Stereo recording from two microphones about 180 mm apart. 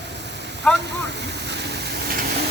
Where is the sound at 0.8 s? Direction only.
70° right (ahead or behind).